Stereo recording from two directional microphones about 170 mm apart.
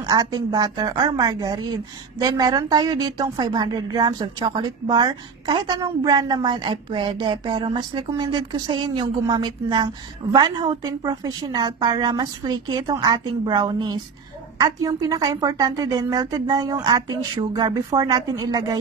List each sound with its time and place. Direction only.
0.0 s a woman's voice: 25° right (ahead or behind)